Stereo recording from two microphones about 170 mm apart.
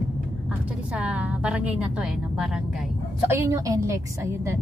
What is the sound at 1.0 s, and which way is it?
Speech, 5° right (ahead or behind).